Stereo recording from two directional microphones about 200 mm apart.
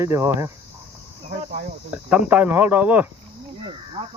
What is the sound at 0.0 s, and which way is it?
Speech, 15° right (ahead or behind).